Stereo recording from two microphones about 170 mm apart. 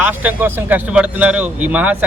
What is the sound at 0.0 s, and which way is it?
A man's voice, 10° right (ahead or behind).